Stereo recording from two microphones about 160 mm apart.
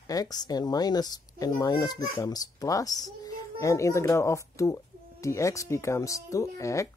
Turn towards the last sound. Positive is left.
turn(degrees=20)  # may be behind; listen again after turning